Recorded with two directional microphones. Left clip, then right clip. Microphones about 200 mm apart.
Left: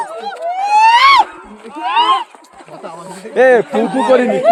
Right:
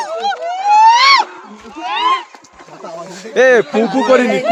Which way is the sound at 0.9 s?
35° left (ahead or behind).